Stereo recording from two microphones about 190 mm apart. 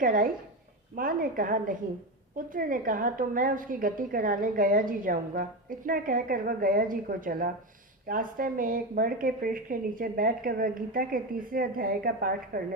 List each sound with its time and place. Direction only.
0.0 s a woman's voice: 45° right (ahead or behind)